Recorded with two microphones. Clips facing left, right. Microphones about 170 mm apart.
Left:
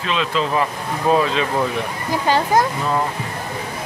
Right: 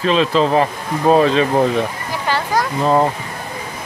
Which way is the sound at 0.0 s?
35° right (ahead or behind).